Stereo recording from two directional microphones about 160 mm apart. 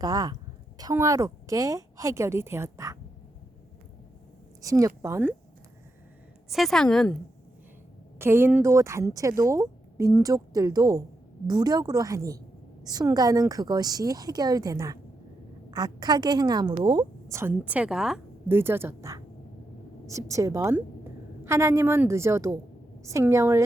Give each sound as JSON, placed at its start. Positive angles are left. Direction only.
{"t": 0.0, "sound": "a woman's voice", "side_deg": -25}
{"t": 4.6, "sound": "a woman's voice", "side_deg": -20}
{"t": 6.5, "sound": "a woman's voice", "side_deg": 0}
{"t": 8.2, "sound": "a woman's voice", "side_deg": -15}
{"t": 18.4, "sound": "a woman's voice", "side_deg": -15}